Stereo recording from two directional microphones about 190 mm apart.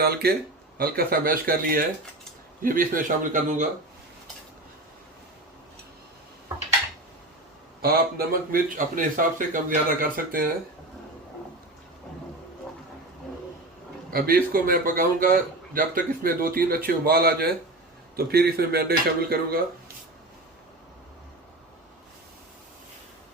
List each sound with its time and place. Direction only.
0.0 s a man's voice: 55° right (ahead or behind)
7.8 s a man's voice: 50° right (ahead or behind)
14.1 s a man's voice: 50° right (ahead or behind)